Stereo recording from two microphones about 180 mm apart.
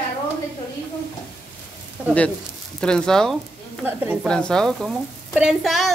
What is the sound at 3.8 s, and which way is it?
Speech, 10° right (ahead or behind).